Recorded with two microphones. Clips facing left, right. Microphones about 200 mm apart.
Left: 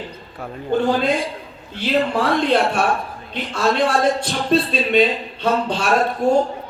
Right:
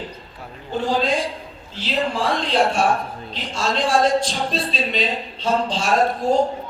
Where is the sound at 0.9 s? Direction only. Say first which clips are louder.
Left 2 dB; 60° left (ahead or behind).